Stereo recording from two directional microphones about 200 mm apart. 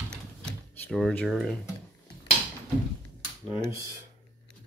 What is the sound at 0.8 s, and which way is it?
Speech, 5° left (ahead or behind).